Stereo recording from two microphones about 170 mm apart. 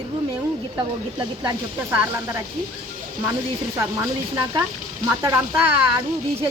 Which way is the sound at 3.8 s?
15° right (ahead or behind).